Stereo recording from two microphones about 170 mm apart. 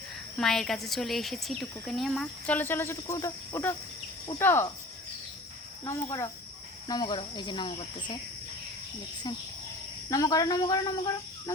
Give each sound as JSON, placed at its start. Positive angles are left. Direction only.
{"t": 0.3, "sound": "a woman's voice", "side_deg": 0}
{"t": 5.8, "sound": "speech", "side_deg": 20}
{"t": 10.1, "sound": "speech", "side_deg": 20}